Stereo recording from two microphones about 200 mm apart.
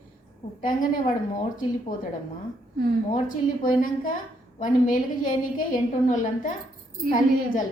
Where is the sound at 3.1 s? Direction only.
40° left (ahead or behind).